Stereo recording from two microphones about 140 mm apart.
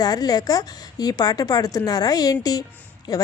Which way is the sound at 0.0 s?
25° left (ahead or behind).